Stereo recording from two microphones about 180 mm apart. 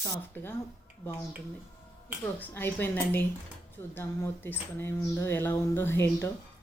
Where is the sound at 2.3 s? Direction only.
10° left (ahead or behind).